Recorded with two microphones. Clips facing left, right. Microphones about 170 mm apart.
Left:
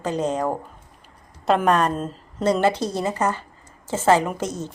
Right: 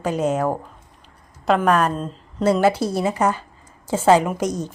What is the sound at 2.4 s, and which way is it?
Speech, 10° right (ahead or behind).